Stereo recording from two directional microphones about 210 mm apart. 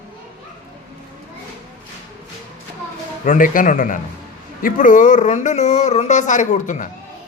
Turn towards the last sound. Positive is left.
turn(degrees=35)  # may be behind; listen again after turning